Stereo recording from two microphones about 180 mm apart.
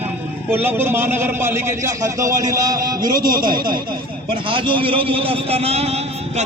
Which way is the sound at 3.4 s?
25° right (ahead or behind).